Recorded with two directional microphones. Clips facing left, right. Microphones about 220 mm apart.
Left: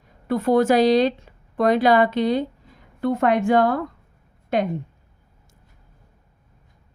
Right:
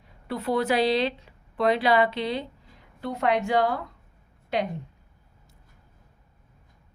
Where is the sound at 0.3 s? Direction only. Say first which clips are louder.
Left 8 dB; 45° left (ahead or behind).